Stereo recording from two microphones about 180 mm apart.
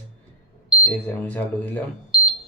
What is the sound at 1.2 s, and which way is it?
Speech, 10° left (ahead or behind).